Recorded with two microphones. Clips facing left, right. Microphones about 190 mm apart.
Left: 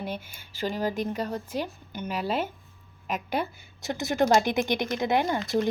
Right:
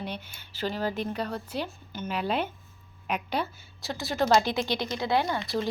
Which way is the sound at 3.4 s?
20° left (ahead or behind).